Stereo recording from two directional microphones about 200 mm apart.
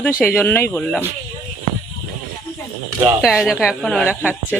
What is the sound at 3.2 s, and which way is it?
Speech, 5° right (ahead or behind).